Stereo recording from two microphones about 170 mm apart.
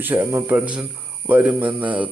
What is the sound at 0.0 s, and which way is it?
Mantra, 15° right (ahead or behind).